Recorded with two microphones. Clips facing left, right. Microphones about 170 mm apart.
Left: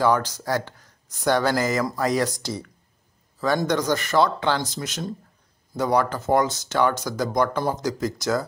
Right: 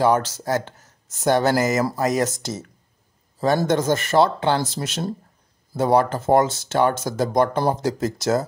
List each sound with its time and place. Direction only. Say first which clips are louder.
0.0 s speech: right 2 dB; 25° right (ahead or behind)